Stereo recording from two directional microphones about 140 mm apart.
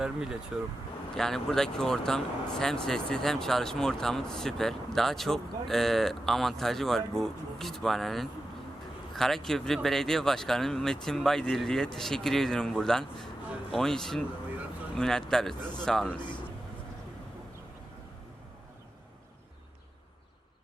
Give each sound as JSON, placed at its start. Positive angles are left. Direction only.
{"t": 0.0, "sound": "speech", "side_deg": -5}